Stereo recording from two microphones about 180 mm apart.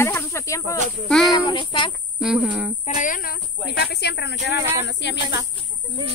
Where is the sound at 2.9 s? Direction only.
50° left (ahead or behind).